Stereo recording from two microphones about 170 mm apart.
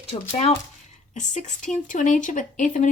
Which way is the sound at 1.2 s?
45° left (ahead or behind).